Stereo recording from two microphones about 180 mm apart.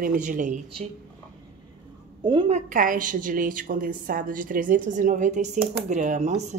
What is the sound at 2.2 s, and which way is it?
Speech, 25° right (ahead or behind).